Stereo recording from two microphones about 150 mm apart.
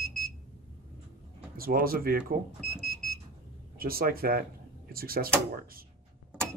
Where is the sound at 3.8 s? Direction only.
80° right.